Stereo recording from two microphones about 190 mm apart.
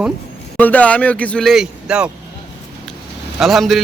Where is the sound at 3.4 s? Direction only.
Centre (ahead or behind).